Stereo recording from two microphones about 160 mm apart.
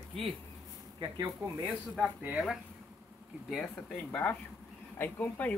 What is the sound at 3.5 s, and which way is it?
Speech, 5° left (ahead or behind).